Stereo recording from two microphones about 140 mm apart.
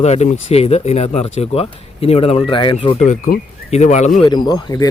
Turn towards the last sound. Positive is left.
turn(degrees=25)  # may be behind; listen again after turning